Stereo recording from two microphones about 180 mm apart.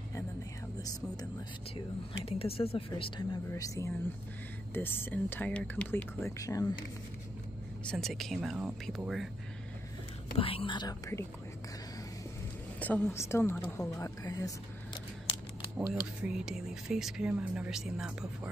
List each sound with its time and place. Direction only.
2.2 s speech: 30° left (ahead or behind)
3.5 s speech: 20° left (ahead or behind)
7.9 s speech: centre (ahead or behind)
10.3 s speech: 30° left (ahead or behind)
12.7 s speech: 10° left (ahead or behind)
15.8 s speech: 5° right (ahead or behind)